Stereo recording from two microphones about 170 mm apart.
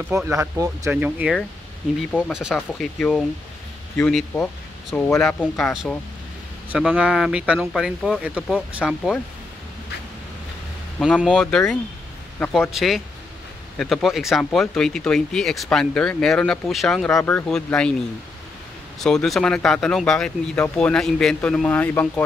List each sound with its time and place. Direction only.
0.3 s speech: 20° right (ahead or behind)
1.0 s speech: 5° right (ahead or behind)
7.0 s speech: 5° right (ahead or behind)
11.0 s speech: 5° left (ahead or behind)
17.1 s speech: 15° left (ahead or behind)
18.9 s speech: centre (ahead or behind)